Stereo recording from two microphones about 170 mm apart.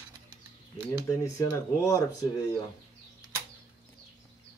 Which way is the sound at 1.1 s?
15° left (ahead or behind).